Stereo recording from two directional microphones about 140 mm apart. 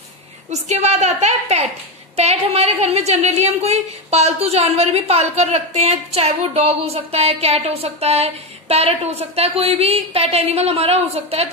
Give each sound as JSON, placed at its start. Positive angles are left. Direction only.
{"t": 0.5, "sound": "a woman's voice", "side_deg": -55}